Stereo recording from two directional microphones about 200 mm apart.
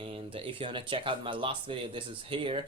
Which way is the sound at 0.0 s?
25° right (ahead or behind).